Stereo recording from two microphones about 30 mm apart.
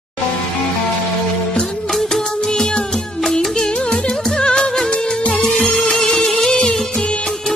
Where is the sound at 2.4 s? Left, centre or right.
Centre.